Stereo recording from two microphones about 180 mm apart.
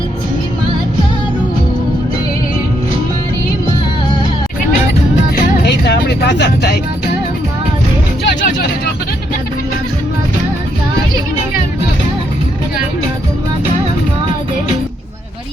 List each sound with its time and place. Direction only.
5.6 s vehicle: 70° left (ahead or behind)